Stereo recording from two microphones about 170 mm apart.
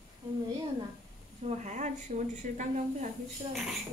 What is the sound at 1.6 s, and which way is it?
Speech, 45° right (ahead or behind).